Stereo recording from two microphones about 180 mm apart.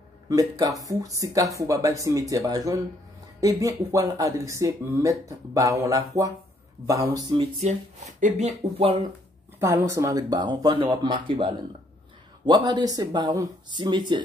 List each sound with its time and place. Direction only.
0.3 s speech: 20° right (ahead or behind)
7.6 s speech: 40° right (ahead or behind)
9.6 s speech: 15° right (ahead or behind)